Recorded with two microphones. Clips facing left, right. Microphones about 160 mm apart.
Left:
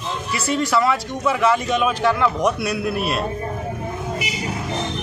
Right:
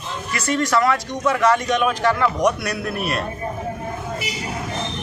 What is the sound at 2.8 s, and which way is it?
Speech, 25° left (ahead or behind).